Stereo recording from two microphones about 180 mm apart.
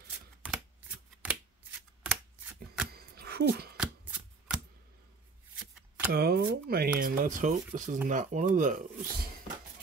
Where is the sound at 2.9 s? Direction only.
60° right (ahead or behind).